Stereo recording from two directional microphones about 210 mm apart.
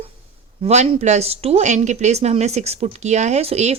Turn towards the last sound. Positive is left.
turn(degrees=-30)  # may be behind; listen again after turning